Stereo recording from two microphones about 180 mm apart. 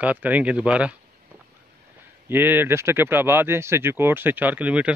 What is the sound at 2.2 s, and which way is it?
Speech, 10° right (ahead or behind).